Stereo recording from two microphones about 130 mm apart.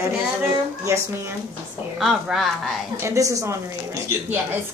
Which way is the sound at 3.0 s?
25° right (ahead or behind).